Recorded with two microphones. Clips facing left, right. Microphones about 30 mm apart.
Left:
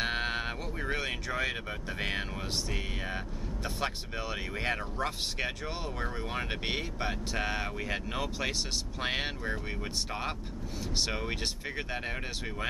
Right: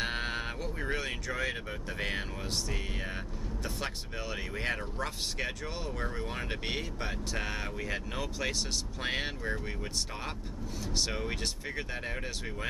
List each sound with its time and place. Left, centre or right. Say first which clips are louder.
0.0 s cattle: left 2 dB; centre
3.6 s speech: left 4 dB; centre
11.0 s speech: left 1 dB; centre